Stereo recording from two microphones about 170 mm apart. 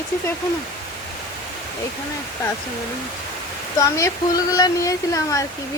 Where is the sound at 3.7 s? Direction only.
20° left (ahead or behind).